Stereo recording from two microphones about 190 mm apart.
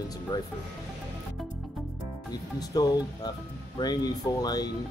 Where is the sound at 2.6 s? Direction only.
20° left (ahead or behind).